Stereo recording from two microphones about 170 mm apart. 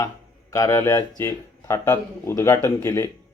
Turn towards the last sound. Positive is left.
turn(degrees=15)  # may be behind; listen again after turning